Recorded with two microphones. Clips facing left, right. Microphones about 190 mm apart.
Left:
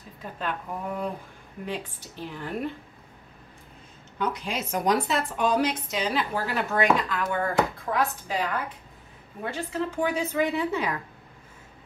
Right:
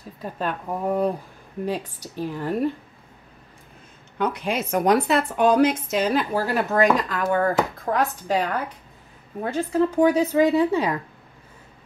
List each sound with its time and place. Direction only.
0.2 s speech: 40° right (ahead or behind)
4.2 s a woman's voice: 60° right (ahead or behind); by 11.0 s 35° right (ahead or behind)